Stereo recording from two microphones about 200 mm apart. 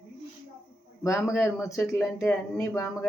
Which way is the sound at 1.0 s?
15° left (ahead or behind).